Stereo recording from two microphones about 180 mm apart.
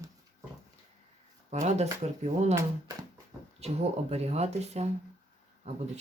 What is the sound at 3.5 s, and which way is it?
Speech, 35° right (ahead or behind).